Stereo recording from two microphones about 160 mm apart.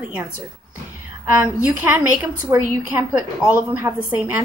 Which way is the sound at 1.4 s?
10° right (ahead or behind).